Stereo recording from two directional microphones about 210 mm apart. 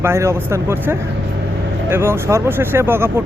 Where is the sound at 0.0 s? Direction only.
10° right (ahead or behind).